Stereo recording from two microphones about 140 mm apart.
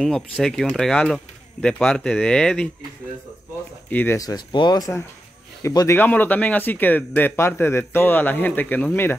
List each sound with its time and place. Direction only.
0.0 s speech: 5° left (ahead or behind)
3.9 s speech: 15° left (ahead or behind)
4.2 s speech: 30° left (ahead or behind)
5.9 s speech: 10° left (ahead or behind)